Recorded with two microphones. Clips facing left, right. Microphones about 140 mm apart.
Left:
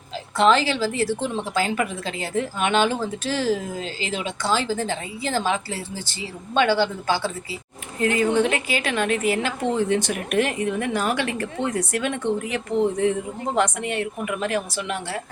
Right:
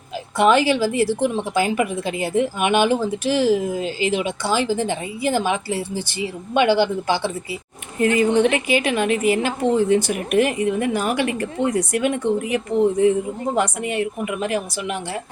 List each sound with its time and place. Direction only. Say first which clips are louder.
0.3 s a woman's voice: right 3 dB; 15° right (ahead or behind)